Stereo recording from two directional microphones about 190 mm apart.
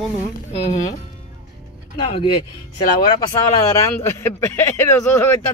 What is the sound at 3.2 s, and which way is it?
Speech, 15° left (ahead or behind).